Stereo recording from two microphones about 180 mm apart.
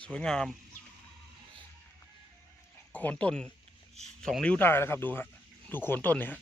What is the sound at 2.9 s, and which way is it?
A man's voice, 10° left (ahead or behind).